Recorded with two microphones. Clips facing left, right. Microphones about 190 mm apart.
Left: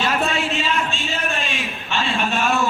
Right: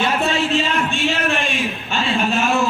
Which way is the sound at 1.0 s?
70° right (ahead or behind).